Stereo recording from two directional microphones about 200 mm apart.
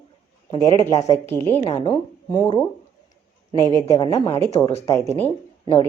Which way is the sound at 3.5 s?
20° right (ahead or behind).